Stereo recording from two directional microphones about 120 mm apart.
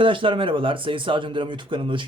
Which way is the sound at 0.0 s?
45° right (ahead or behind).